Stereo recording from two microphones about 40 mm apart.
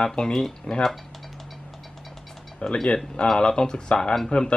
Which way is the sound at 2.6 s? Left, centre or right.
Left.